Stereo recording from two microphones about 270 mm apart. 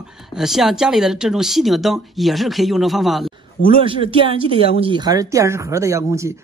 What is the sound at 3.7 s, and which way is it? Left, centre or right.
Speech, centre.